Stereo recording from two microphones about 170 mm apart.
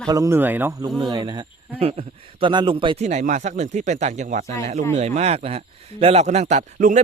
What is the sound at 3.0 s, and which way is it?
Speech, 45° right (ahead or behind).